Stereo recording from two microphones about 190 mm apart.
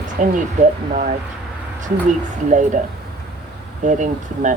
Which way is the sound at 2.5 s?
40° right (ahead or behind).